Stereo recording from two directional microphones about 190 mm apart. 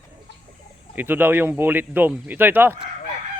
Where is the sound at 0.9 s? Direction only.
10° right (ahead or behind).